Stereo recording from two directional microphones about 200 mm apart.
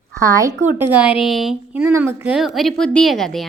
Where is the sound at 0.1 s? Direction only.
15° right (ahead or behind).